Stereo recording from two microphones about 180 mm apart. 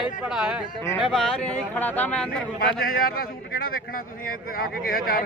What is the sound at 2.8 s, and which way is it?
A man's voice, 55° left (ahead or behind).